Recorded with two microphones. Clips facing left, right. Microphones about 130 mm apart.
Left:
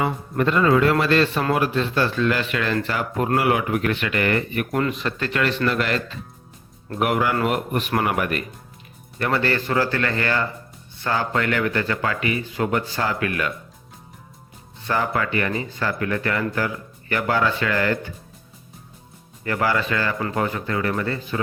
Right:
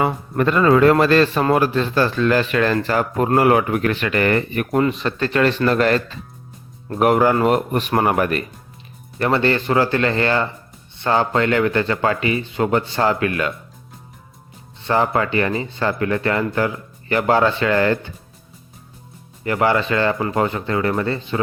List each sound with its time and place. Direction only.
0.0 s a man's voice: 50° right (ahead or behind)
4.7 s speech: 25° right (ahead or behind)
14.8 s speech: 25° right (ahead or behind)
19.5 s speech: 25° right (ahead or behind)